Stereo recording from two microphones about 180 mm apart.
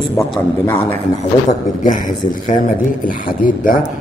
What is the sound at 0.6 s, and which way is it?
Speech, 15° left (ahead or behind).